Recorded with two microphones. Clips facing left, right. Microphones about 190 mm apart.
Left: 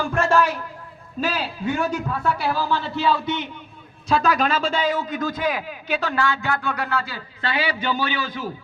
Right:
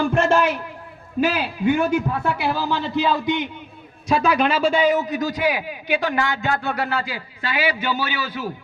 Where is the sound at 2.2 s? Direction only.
20° right (ahead or behind).